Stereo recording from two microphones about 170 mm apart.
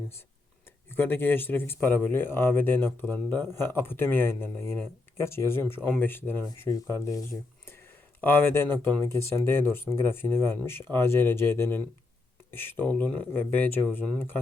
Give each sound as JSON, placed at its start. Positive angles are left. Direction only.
{"t": 0.9, "sound": "speech", "side_deg": 10}